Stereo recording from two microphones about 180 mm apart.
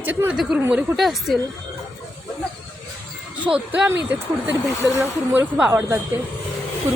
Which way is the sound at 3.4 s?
5° right (ahead or behind).